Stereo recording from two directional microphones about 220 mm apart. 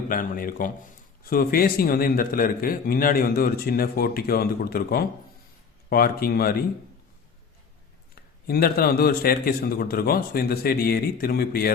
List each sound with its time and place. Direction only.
0.1 s a man's voice: 40° left (ahead or behind)
8.4 s a man's voice: 45° left (ahead or behind)